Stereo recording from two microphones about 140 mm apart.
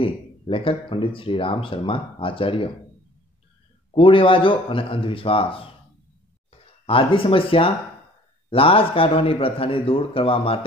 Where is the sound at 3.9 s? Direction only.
40° left (ahead or behind).